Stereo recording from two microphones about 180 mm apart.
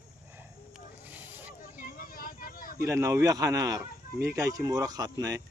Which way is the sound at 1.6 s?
50° left (ahead or behind).